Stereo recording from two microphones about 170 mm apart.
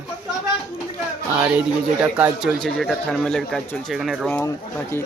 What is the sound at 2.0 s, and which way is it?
A man's voice, 10° right (ahead or behind).